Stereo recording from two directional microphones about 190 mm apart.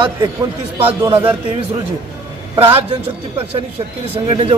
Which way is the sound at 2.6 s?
30° right (ahead or behind).